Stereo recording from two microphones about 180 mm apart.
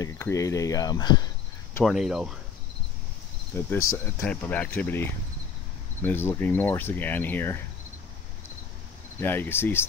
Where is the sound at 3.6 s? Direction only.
15° left (ahead or behind).